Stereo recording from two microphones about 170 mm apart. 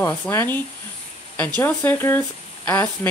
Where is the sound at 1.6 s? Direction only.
10° left (ahead or behind).